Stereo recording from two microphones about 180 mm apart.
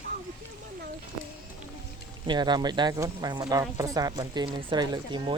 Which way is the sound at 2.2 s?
25° right (ahead or behind).